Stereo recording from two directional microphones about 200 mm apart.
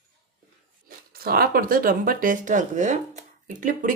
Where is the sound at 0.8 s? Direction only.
50° right (ahead or behind).